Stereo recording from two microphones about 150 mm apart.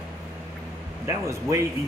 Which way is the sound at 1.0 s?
20° right (ahead or behind).